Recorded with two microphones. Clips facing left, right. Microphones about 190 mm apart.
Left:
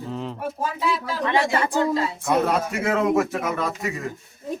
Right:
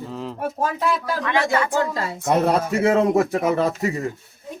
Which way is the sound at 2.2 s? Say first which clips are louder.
Right 4 dB; 35° right (ahead or behind).